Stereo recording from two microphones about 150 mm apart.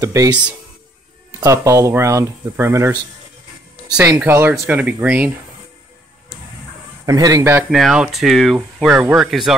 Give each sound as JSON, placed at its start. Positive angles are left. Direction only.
{"t": 0.0, "sound": "speech", "side_deg": -20}
{"t": 4.2, "sound": "speech", "side_deg": -15}
{"t": 7.1, "sound": "speech", "side_deg": -25}
{"t": 7.7, "sound": "speech", "side_deg": -5}